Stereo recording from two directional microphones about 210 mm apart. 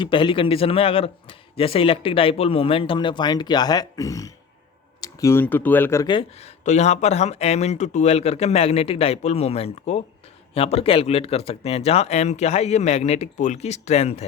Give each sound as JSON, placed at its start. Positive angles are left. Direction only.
{"t": 0.0, "sound": "a man's voice", "side_deg": 25}
{"t": 6.7, "sound": "speech", "side_deg": 30}